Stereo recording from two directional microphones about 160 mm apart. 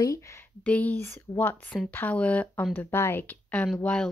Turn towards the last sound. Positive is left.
turn(degrees=5)  # may be behind; listen again after turning